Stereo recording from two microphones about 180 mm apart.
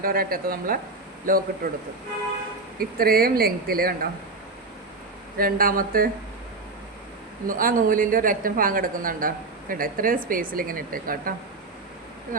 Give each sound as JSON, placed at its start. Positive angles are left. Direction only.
{"t": 0.0, "sound": "a woman's voice", "side_deg": -55}
{"t": 5.4, "sound": "a woman's voice", "side_deg": -55}
{"t": 7.4, "sound": "a woman's voice", "side_deg": -50}